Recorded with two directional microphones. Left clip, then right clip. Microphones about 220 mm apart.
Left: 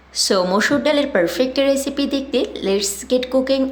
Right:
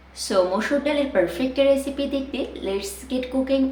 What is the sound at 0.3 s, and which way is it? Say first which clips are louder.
A woman's voice: left 3 dB; 45° left (ahead or behind).